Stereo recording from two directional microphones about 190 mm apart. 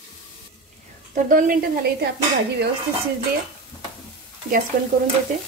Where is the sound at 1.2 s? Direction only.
45° right (ahead or behind).